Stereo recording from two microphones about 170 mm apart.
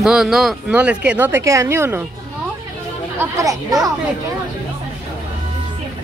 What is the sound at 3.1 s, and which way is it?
Speech, 20° right (ahead or behind).